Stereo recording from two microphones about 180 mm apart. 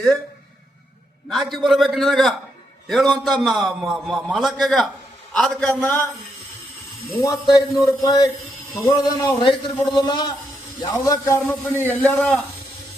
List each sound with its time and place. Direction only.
1.3 s a man's voice: centre (ahead or behind)
7.2 s a man's voice: 20° left (ahead or behind)